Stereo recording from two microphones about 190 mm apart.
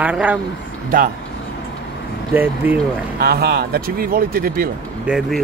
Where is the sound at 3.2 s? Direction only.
55° right (ahead or behind).